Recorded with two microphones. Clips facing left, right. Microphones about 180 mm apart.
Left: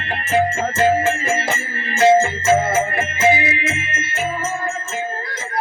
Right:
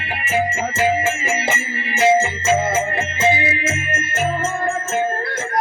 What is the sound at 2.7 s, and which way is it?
Music, 25° right (ahead or behind).